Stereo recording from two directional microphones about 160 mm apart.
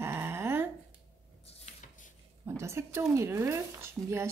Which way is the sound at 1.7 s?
40° left (ahead or behind).